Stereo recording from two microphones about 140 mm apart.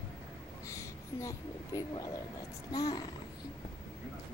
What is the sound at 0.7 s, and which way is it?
Speech, 20° left (ahead or behind).